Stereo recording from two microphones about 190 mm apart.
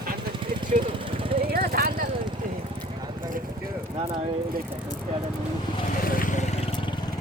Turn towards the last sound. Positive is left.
turn(degrees=45)  # may be behind; listen again after turning